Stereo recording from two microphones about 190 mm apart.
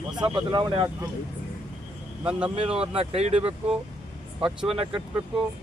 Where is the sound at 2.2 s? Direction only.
5° right (ahead or behind).